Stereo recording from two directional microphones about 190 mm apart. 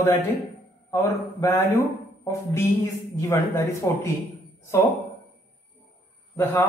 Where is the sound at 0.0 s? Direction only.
10° left (ahead or behind).